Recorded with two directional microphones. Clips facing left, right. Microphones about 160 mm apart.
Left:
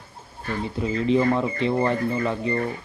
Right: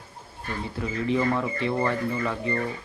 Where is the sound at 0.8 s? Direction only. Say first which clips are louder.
Left 4 dB; 20° left (ahead or behind).